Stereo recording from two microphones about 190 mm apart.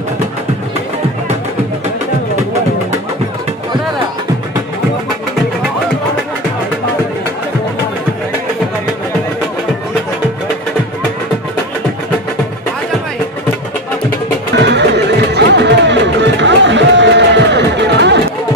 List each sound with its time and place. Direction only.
14.6 s music: 65° right (ahead or behind)